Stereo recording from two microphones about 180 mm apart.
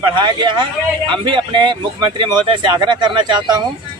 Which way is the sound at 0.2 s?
25° right (ahead or behind).